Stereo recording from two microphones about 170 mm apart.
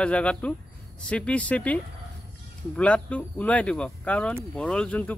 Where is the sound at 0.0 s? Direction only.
5° left (ahead or behind).